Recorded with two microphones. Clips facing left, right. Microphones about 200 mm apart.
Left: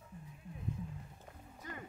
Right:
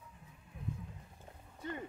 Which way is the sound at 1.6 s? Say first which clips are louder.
Right 7 dB; 30° right (ahead or behind).